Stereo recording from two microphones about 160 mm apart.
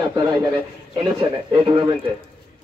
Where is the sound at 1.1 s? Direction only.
30° right (ahead or behind).